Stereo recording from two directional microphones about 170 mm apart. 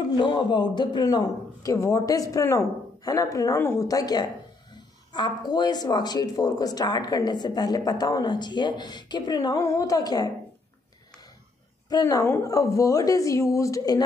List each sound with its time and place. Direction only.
0.2 s speech: 25° left (ahead or behind)
11.9 s speech: 20° left (ahead or behind)